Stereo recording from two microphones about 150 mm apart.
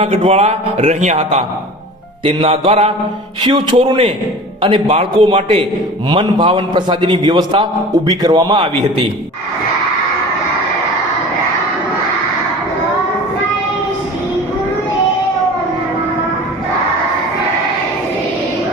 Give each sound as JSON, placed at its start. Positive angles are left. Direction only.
{"t": 0.0, "sound": "a man's voice", "side_deg": -45}
{"t": 2.2, "sound": "a man's voice", "side_deg": -35}